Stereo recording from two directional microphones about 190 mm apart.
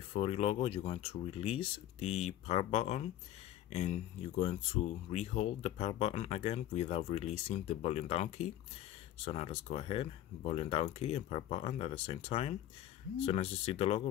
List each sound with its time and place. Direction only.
0.1 s speech: 30° left (ahead or behind)